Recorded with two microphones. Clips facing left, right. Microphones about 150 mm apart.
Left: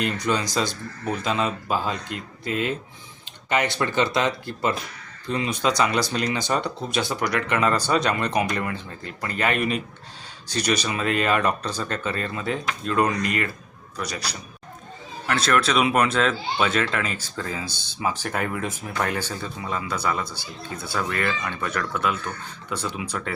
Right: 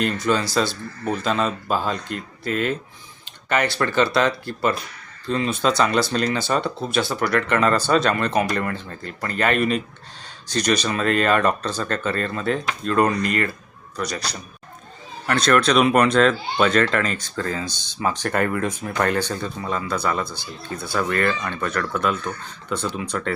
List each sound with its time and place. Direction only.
0.0 s speech: 15° left (ahead or behind)
13.0 s speech: 50° right (ahead or behind)
14.0 s speech: 10° left (ahead or behind)